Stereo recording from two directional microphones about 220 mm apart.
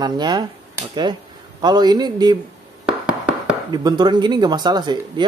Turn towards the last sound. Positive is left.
turn(degrees=-20)  # may be behind; listen again after turning